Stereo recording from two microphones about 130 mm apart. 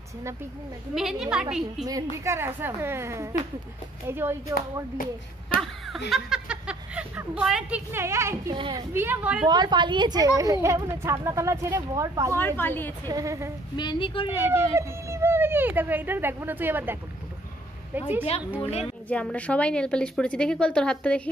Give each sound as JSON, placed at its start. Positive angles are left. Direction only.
{"t": 0.9, "sound": "a woman's voice", "side_deg": -5}
{"t": 1.9, "sound": "a woman's voice", "side_deg": -25}
{"t": 5.6, "sound": "a sound", "side_deg": 0}
{"t": 7.9, "sound": "a woman's voice", "side_deg": -20}
{"t": 9.5, "sound": "a woman's voice", "side_deg": -35}
{"t": 12.4, "sound": "a woman's voice", "side_deg": 15}
{"t": 13.1, "sound": "a woman's voice", "side_deg": -25}
{"t": 13.7, "sound": "a woman's voice", "side_deg": 35}
{"t": 14.5, "sound": "a woman's voice", "side_deg": -20}
{"t": 18.6, "sound": "a child's voice", "side_deg": 55}
{"t": 19.0, "sound": "a woman's voice", "side_deg": 10}